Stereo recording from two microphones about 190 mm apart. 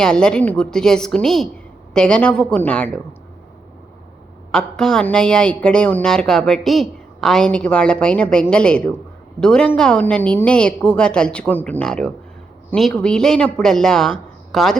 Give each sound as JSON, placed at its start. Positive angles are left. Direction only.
{"t": 0.0, "sound": "a woman's voice", "side_deg": 5}
{"t": 4.5, "sound": "a woman's voice", "side_deg": 5}